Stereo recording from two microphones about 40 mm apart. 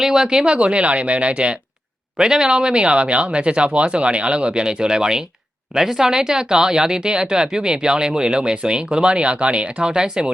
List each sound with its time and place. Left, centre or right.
0.0 s speech: centre
2.1 s speech: centre